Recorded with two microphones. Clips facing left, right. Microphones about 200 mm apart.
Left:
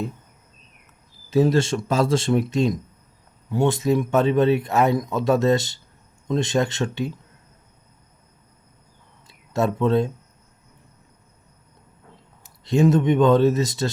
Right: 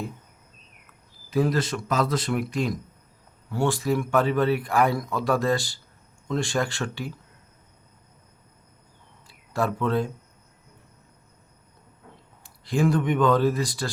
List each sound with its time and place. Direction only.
1.3 s speech: 25° left (ahead or behind)
9.2 s a sound: 25° left (ahead or behind)
12.6 s speech: 25° left (ahead or behind)